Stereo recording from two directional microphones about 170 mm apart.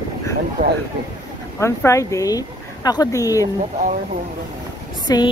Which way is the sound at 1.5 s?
15° left (ahead or behind).